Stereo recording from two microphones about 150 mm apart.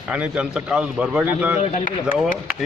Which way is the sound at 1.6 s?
55° left (ahead or behind).